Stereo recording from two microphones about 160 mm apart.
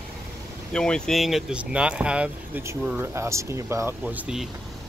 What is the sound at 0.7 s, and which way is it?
Speech, 5° left (ahead or behind).